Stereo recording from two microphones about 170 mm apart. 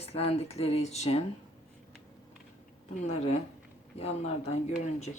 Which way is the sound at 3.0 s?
40° left (ahead or behind).